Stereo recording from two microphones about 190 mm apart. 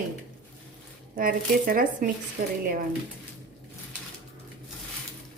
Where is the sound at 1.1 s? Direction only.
45° right (ahead or behind).